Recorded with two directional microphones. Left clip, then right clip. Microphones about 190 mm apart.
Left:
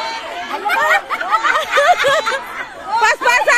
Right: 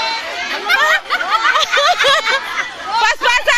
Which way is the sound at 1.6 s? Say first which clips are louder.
Even; 15° left (ahead or behind).